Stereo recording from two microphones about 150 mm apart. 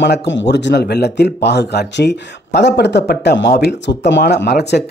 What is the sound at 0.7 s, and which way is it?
Speech, 90° left.